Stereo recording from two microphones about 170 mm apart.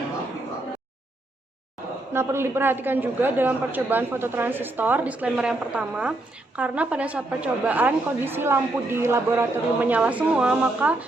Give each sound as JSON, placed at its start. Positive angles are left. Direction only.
{"t": 2.1, "sound": "a woman's voice", "side_deg": -15}